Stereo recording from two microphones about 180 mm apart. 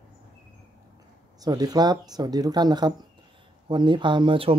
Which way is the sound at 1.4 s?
20° right (ahead or behind).